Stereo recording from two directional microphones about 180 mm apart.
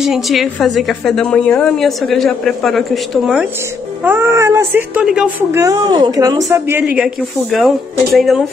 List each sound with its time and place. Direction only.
0.0 s a woman's voice: centre (ahead or behind)
4.0 s speech: 10° right (ahead or behind)
5.6 s a woman's voice: 20° right (ahead or behind); by 8.5 s centre (ahead or behind)